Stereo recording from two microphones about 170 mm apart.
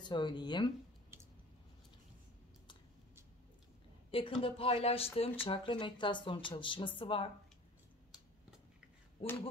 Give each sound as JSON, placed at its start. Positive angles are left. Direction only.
{"t": 0.0, "sound": "speech", "side_deg": 25}
{"t": 4.1, "sound": "speech", "side_deg": 30}
{"t": 9.2, "sound": "speech", "side_deg": 10}